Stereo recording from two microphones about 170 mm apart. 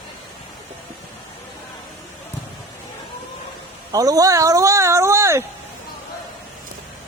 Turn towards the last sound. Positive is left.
turn(degrees=-15)  # may be behind; listen again after turning